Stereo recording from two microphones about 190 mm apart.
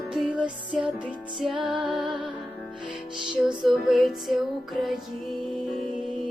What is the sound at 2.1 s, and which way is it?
Music, 25° right (ahead or behind).